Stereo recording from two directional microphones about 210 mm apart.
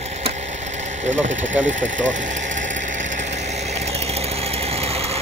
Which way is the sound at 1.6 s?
35° right (ahead or behind).